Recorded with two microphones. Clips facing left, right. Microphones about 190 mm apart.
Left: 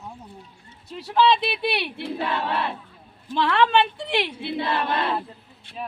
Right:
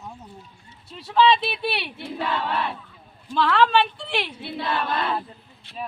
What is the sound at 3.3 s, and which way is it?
Speech, 20° left (ahead or behind).